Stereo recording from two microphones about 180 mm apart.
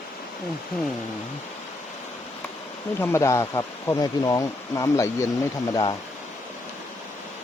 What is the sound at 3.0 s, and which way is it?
Speech, 15° left (ahead or behind).